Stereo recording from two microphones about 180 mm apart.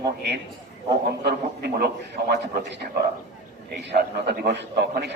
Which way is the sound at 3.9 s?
65° right (ahead or behind).